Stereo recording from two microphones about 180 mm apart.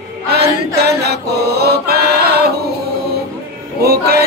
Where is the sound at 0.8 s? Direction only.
60° right (ahead or behind).